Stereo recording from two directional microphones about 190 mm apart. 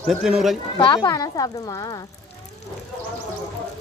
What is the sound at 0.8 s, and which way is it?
Speech, 25° left (ahead or behind).